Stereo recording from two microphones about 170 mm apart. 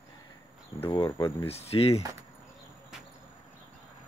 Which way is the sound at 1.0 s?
15° left (ahead or behind).